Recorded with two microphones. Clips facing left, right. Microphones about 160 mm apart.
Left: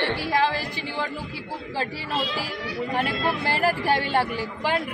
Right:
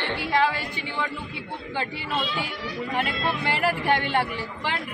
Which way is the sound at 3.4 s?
35° left (ahead or behind).